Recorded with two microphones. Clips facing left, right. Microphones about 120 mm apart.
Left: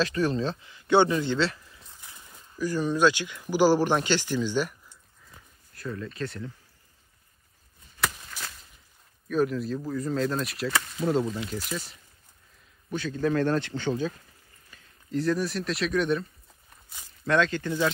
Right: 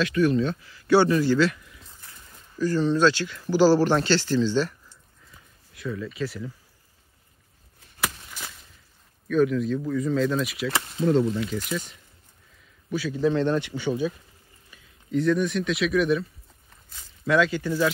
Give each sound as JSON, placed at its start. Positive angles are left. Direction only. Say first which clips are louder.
{"t": 0.0, "sound": "a man's voice", "louder": "right 4 dB", "side_deg": 35}
{"t": 2.5, "sound": "speech", "louder": "right 4 dB", "side_deg": 10}
{"t": 5.7, "sound": "speech", "louder": "right 3 dB", "side_deg": 0}
{"t": 8.0, "sound": "a sound", "louder": "even", "side_deg": -5}
{"t": 9.3, "sound": "speech", "louder": "right 4 dB", "side_deg": 5}
{"t": 12.9, "sound": "speech", "louder": "right 3 dB", "side_deg": -10}
{"t": 15.0, "sound": "speech", "louder": "right 4 dB", "side_deg": 0}